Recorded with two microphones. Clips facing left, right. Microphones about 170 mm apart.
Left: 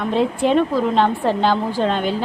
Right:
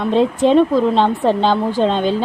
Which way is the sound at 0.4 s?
20° right (ahead or behind).